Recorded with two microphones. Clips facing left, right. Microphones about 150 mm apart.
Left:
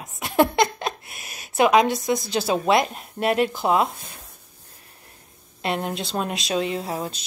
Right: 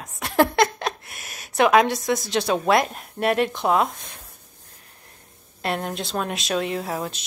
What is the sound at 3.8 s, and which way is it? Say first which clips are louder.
Speech: even; 35° left (ahead or behind).